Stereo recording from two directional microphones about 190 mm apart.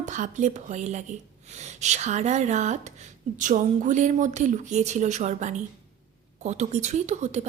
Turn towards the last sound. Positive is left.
turn(degrees=-35)  # may be behind; listen again after turning